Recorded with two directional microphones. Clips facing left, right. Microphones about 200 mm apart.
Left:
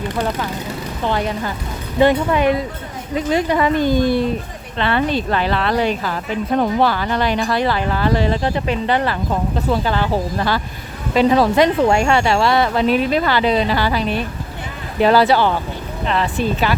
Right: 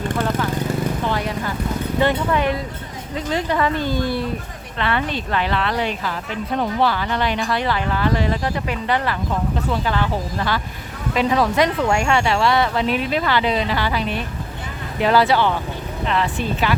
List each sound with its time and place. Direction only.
2.0 s speech: 15° left (ahead or behind)
4.8 s a woman's voice: 35° left (ahead or behind)